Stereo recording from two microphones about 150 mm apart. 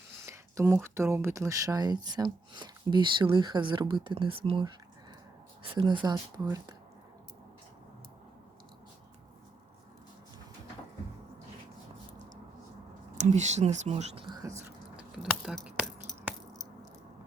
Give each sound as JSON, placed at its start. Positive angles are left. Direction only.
{"t": 0.3, "sound": "speech", "side_deg": -20}
{"t": 5.7, "sound": "speech", "side_deg": -30}
{"t": 13.1, "sound": "speech", "side_deg": -50}
{"t": 14.3, "sound": "whispering", "side_deg": -25}
{"t": 15.2, "sound": "biting", "side_deg": -5}